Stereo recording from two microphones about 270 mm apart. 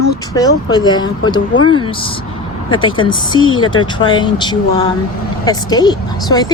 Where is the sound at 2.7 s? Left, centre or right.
Centre.